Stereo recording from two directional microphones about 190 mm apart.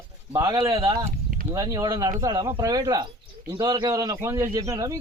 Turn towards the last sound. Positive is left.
turn(degrees=-15)  # may be behind; listen again after turning